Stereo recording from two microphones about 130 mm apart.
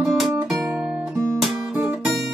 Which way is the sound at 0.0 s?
Centre (ahead or behind).